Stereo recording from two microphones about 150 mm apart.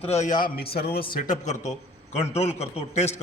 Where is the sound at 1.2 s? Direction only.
55° left (ahead or behind).